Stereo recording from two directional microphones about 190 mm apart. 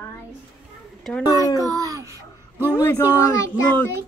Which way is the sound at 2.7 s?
10° left (ahead or behind).